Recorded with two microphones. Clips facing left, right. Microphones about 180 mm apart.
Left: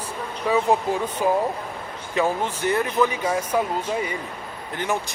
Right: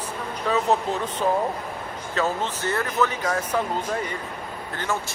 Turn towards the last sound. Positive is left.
turn(degrees=15)  # may be behind; listen again after turning